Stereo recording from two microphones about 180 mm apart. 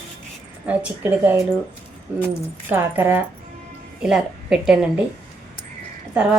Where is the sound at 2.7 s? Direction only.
10° right (ahead or behind).